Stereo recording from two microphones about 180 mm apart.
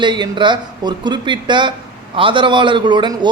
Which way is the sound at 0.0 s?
25° right (ahead or behind).